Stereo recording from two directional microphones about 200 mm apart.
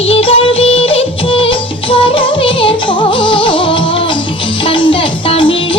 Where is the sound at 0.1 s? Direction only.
25° left (ahead or behind).